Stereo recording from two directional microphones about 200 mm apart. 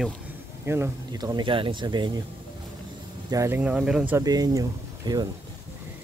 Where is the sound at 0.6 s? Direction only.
15° right (ahead or behind).